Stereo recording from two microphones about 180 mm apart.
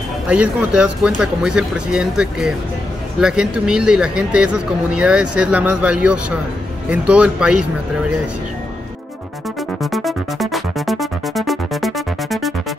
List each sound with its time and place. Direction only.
0.3 s speech: 5° right (ahead or behind)
9.8 s music: centre (ahead or behind)